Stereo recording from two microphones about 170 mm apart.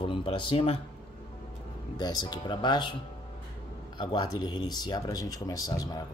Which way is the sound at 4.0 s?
30° left (ahead or behind).